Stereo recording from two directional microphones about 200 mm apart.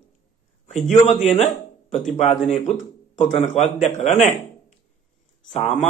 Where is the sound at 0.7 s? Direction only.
35° left (ahead or behind).